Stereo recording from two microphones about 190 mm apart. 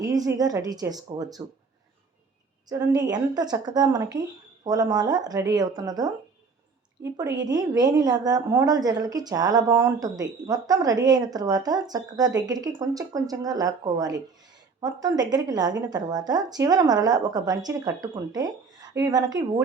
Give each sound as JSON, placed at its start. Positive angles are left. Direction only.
{"t": 0.0, "sound": "a woman's voice", "side_deg": -20}
{"t": 2.6, "sound": "a woman's voice", "side_deg": -20}